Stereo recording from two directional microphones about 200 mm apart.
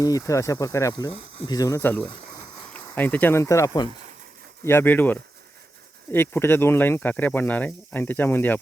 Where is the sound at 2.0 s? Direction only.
20° left (ahead or behind).